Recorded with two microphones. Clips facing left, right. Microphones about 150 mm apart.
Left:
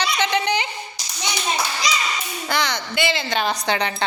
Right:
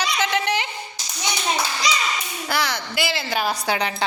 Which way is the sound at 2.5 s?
5° right (ahead or behind).